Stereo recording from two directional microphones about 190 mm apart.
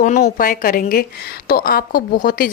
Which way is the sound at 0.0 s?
40° left (ahead or behind).